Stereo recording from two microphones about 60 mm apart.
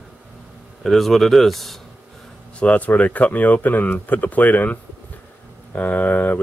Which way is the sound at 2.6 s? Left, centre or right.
Left.